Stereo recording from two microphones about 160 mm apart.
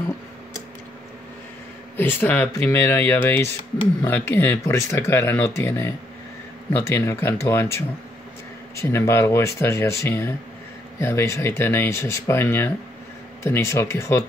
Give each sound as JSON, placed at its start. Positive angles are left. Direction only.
{"t": 2.0, "sound": "speech", "side_deg": 10}